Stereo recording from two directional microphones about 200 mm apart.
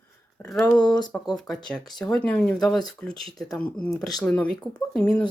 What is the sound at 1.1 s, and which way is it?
Speech, 5° left (ahead or behind).